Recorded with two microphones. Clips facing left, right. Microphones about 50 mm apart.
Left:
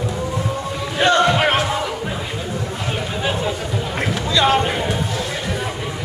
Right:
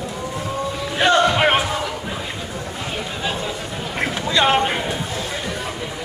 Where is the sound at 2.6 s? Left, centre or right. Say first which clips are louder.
Left 3 dB; centre.